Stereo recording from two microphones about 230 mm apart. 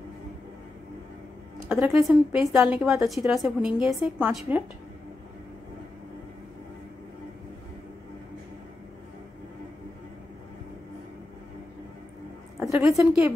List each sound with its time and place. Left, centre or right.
1.7 s a woman's voice: centre
2.5 s a woman's voice: centre
12.5 s a woman's voice: centre